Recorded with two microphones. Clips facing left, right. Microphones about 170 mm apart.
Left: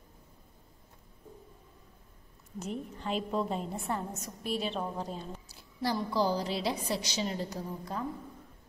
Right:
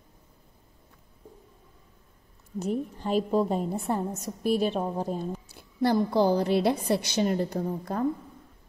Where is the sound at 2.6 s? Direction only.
35° right (ahead or behind); by 8.1 s 55° right (ahead or behind).